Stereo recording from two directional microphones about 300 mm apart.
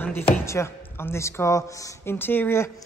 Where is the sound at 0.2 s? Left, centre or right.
Centre.